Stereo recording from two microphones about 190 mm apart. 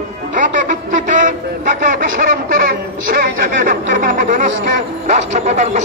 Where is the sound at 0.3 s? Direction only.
45° right (ahead or behind).